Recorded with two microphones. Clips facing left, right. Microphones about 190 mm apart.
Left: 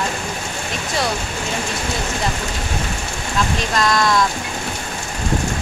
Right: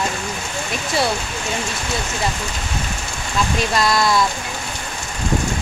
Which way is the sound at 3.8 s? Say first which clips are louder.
Left 2 dB; 5° right (ahead or behind).